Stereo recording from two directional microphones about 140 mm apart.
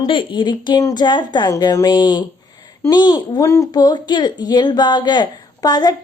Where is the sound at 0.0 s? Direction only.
35° left (ahead or behind).